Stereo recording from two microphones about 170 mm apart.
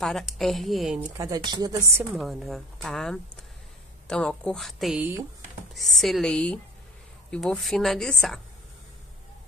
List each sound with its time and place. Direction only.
0.0 s speech: centre (ahead or behind)
1.1 s speech: 20° right (ahead or behind)
2.1 s speech: centre (ahead or behind)